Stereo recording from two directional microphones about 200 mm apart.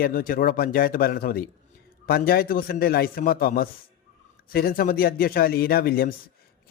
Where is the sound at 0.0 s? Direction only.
45° left (ahead or behind).